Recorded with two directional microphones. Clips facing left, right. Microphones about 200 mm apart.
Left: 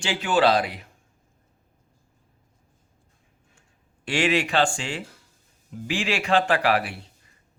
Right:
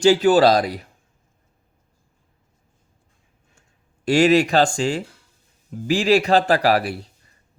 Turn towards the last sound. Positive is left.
turn(degrees=-40)  # may be behind; listen again after turning